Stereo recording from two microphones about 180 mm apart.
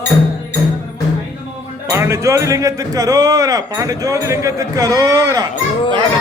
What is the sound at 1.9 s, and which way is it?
Speech, 15° right (ahead or behind).